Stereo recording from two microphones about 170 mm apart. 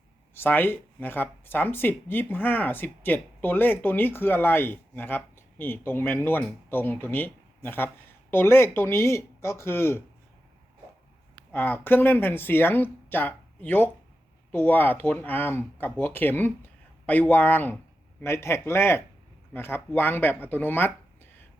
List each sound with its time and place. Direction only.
0.3 s speech: 10° left (ahead or behind)
11.5 s speech: 10° left (ahead or behind)